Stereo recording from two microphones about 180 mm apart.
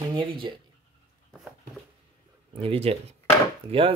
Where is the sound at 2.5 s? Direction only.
30° right (ahead or behind).